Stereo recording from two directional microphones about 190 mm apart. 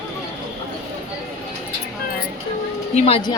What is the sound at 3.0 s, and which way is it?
Speech, 30° left (ahead or behind).